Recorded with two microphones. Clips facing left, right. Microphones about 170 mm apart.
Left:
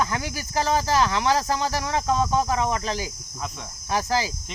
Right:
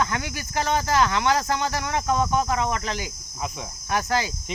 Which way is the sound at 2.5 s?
25° left (ahead or behind).